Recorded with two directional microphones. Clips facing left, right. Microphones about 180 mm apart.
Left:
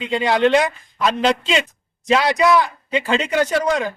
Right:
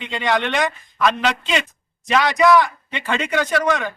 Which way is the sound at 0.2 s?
30° left (ahead or behind).